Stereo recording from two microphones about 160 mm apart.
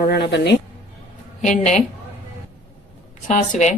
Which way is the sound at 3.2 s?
50° left (ahead or behind).